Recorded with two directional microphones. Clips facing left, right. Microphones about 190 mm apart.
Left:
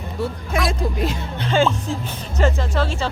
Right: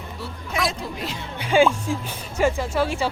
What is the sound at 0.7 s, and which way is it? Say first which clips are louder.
Speech: left 7 dB; 50° left (ahead or behind).